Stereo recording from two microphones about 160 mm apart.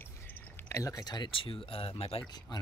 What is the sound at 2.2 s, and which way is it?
Speech, 25° left (ahead or behind).